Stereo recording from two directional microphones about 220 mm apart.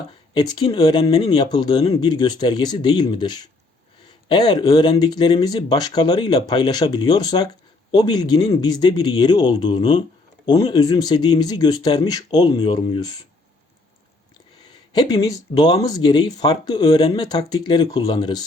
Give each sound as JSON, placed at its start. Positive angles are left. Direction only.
{"t": 0.3, "sound": "speech", "side_deg": 20}
{"t": 14.9, "sound": "speech", "side_deg": 15}